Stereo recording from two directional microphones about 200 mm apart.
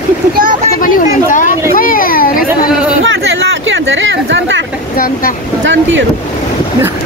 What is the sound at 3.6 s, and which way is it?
Speech, 70° right (ahead or behind).